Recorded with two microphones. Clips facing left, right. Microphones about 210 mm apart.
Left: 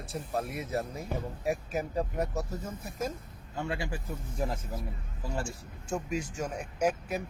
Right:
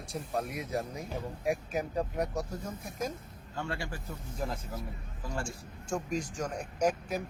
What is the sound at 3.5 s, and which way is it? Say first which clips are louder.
Speech: left 3 dB; 15° left (ahead or behind).